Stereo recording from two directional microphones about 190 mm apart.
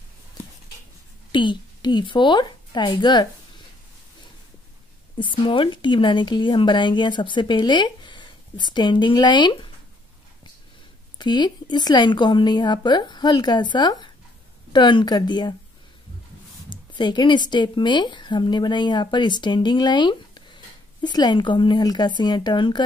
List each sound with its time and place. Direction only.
1.3 s a woman's voice: 25° left (ahead or behind)
5.2 s speech: 25° left (ahead or behind)
11.1 s speech: 25° left (ahead or behind)
16.6 s speech: 25° left (ahead or behind)